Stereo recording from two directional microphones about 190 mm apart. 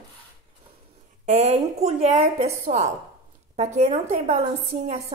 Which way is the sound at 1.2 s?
35° right (ahead or behind).